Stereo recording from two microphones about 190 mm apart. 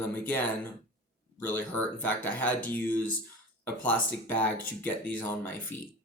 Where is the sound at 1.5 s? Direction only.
10° left (ahead or behind).